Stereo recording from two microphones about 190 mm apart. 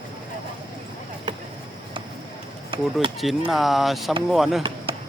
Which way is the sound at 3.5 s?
Centre (ahead or behind).